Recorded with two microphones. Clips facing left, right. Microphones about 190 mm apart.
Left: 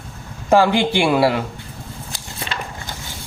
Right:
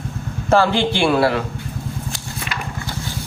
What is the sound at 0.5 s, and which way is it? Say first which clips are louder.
Speech: left 1 dB; 15° left (ahead or behind).